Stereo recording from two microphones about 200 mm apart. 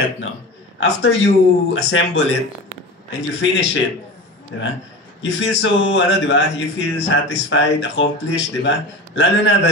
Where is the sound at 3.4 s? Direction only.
70° left (ahead or behind).